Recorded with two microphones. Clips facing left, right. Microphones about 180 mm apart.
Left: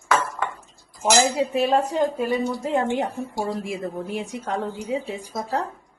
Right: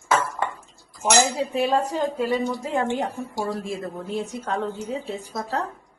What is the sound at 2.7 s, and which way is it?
A woman's voice, 20° left (ahead or behind).